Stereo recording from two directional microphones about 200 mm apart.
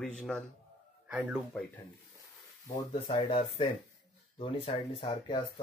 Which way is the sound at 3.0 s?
25° left (ahead or behind).